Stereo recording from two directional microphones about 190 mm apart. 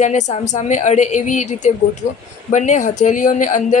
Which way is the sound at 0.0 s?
40° left (ahead or behind).